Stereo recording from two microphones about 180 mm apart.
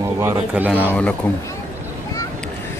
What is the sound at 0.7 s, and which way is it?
Speech, 10° left (ahead or behind).